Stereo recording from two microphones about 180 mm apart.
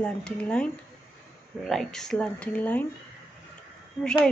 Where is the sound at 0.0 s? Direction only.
5° left (ahead or behind).